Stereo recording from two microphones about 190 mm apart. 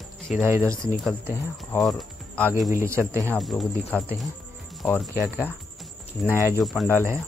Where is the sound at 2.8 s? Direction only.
15° right (ahead or behind).